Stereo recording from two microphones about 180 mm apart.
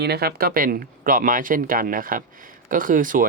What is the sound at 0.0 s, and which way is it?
Speech, 65° right (ahead or behind).